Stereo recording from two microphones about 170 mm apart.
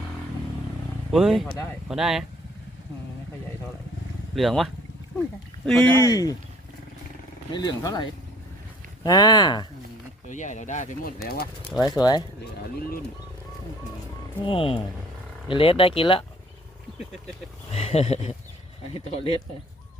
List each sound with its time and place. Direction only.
1.1 s speech: centre (ahead or behind)
4.4 s speech: centre (ahead or behind); by 6.3 s 20° left (ahead or behind)
7.5 s speech: 25° left (ahead or behind)
9.0 s speech: 25° left (ahead or behind)
10.2 s speech: 45° left (ahead or behind)
11.8 s speech: 25° left (ahead or behind)
14.4 s speech: 30° left (ahead or behind)
17.7 s speech: 40° left (ahead or behind)